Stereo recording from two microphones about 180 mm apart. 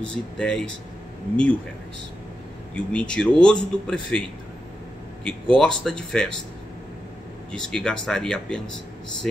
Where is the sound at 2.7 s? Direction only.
5° left (ahead or behind).